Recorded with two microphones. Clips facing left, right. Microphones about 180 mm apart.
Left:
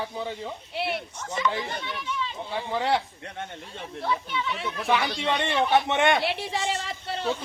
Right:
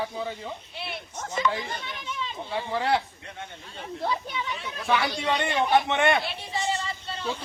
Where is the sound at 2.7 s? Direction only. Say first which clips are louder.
Even; 20° left (ahead or behind).